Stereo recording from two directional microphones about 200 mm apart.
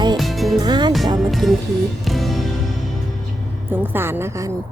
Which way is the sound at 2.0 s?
Centre (ahead or behind).